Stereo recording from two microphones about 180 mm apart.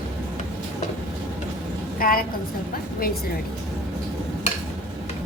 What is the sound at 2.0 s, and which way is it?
Speech, 50° left (ahead or behind).